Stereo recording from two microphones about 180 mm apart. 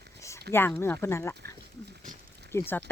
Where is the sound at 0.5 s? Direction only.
65° right (ahead or behind).